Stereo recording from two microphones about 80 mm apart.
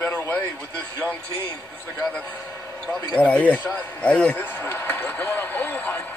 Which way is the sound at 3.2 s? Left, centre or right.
Left.